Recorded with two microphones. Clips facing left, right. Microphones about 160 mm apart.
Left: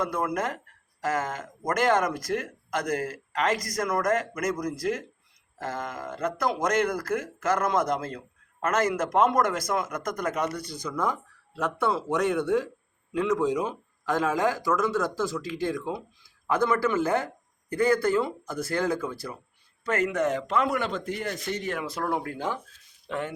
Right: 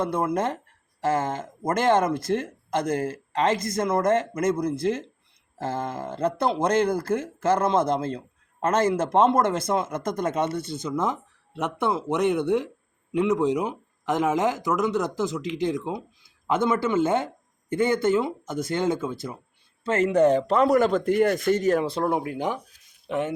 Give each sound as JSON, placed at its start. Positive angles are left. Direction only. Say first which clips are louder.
{"t": 0.0, "sound": "a man's voice", "louder": "right 3 dB", "side_deg": -25}
{"t": 21.8, "sound": "speech", "louder": "right 4 dB", "side_deg": -25}